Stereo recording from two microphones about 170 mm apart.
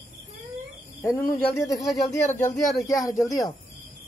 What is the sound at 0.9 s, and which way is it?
Speech, 10° left (ahead or behind).